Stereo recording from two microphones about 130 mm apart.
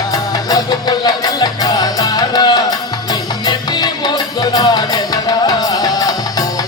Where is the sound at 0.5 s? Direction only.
30° left (ahead or behind).